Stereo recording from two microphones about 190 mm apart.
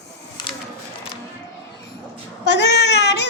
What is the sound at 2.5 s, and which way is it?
Speech, 65° left (ahead or behind).